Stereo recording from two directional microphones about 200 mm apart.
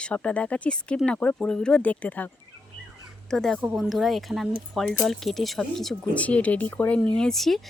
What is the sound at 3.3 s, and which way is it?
A woman's voice, 5° left (ahead or behind).